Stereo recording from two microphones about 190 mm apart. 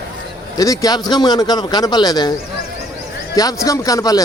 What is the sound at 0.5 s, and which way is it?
A man's voice, 20° left (ahead or behind).